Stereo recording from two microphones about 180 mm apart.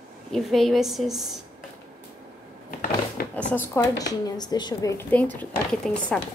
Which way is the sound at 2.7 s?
50° left (ahead or behind).